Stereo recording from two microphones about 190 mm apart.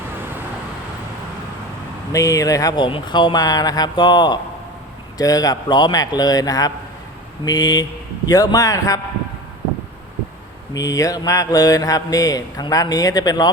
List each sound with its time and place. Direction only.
2.1 s mantra: 20° left (ahead or behind)
8.3 s speech: 20° left (ahead or behind)
10.8 s mantra: 15° left (ahead or behind)